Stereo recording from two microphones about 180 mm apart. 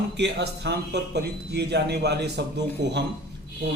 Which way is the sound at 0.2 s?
70° right (ahead or behind).